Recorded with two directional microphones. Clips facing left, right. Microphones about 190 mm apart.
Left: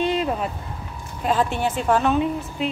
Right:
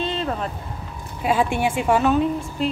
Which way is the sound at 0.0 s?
15° left (ahead or behind).